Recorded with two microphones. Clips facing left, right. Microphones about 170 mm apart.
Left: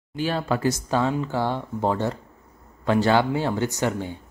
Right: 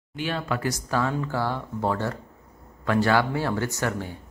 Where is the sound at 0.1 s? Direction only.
35° left (ahead or behind).